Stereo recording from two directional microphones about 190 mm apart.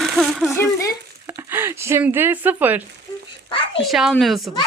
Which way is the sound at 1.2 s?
10° right (ahead or behind).